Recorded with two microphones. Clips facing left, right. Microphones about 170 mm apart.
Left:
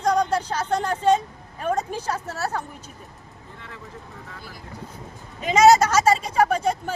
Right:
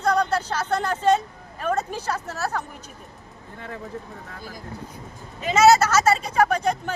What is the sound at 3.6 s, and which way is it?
Speech, 50° right (ahead or behind).